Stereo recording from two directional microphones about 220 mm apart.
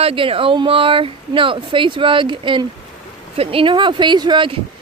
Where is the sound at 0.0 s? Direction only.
25° right (ahead or behind).